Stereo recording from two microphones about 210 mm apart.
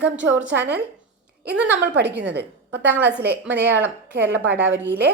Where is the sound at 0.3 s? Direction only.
5° right (ahead or behind).